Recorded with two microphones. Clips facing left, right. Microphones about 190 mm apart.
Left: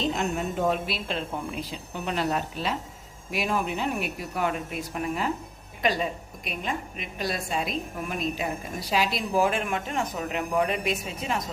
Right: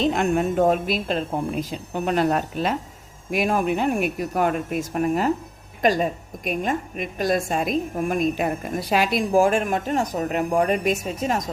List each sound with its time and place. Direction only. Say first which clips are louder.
0.0 s a woman's voice: right 7 dB; 55° right (ahead or behind)